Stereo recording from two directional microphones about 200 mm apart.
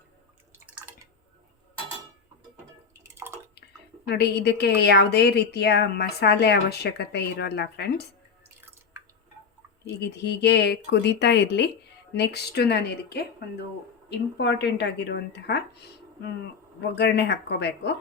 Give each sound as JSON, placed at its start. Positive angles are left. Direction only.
{"t": 3.2, "sound": "bathtub", "side_deg": -10}
{"t": 4.1, "sound": "a woman's voice", "side_deg": 55}
{"t": 10.0, "sound": "a woman's voice", "side_deg": 55}
{"t": 16.9, "sound": "a woman's voice", "side_deg": 55}